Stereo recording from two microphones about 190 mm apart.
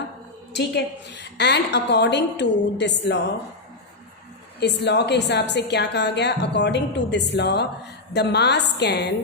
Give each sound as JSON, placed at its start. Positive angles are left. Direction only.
{"t": 1.1, "sound": "a woman's voice", "side_deg": 65}
{"t": 4.6, "sound": "a woman's voice", "side_deg": 65}